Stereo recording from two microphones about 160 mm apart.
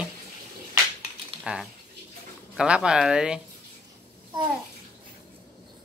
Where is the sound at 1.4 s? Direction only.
Centre (ahead or behind).